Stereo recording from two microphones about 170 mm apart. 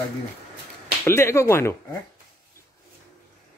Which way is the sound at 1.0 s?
15° left (ahead or behind).